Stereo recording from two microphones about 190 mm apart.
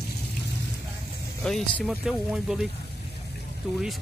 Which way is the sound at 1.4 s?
Centre (ahead or behind).